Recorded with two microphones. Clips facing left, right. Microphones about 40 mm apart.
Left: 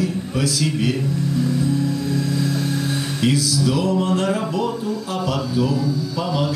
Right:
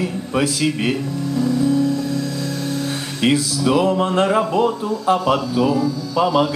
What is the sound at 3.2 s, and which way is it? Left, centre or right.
Speech, right.